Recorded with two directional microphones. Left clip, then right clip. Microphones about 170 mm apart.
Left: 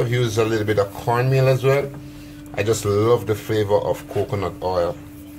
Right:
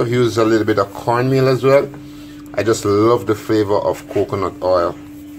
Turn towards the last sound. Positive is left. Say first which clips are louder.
# right 6 dB
turn(degrees=-30)  # may be behind; listen again after turning